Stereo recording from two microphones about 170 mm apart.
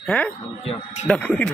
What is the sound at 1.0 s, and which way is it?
Speech, 10° left (ahead or behind).